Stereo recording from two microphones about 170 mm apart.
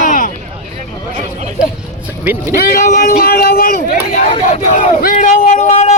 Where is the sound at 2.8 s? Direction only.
50° left (ahead or behind).